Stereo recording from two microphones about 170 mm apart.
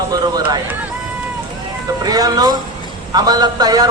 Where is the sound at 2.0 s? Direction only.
25° right (ahead or behind).